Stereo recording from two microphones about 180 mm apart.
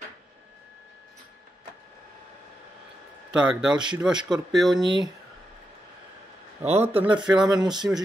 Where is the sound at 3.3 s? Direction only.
5° right (ahead or behind).